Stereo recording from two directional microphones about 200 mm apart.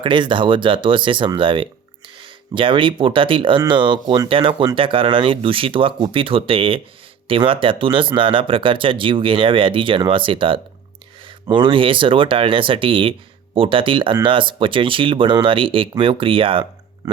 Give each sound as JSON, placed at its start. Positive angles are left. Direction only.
{"t": 0.0, "sound": "speech", "side_deg": -25}